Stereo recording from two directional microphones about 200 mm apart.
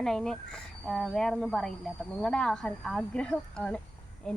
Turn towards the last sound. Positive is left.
turn(degrees=5)  # may be behind; listen again after turning